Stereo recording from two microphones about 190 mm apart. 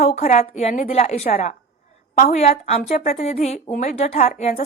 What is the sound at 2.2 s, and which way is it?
A woman's voice, 35° left (ahead or behind).